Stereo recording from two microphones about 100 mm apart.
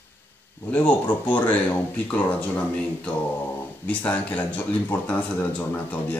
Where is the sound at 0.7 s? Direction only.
15° left (ahead or behind).